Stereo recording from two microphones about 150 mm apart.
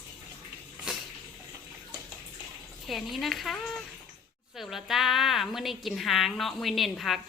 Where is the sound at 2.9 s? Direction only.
Centre (ahead or behind).